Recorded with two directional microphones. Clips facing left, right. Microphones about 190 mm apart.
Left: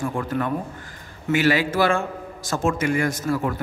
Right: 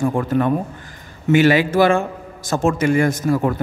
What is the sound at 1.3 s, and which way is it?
A man's voice, 20° right (ahead or behind).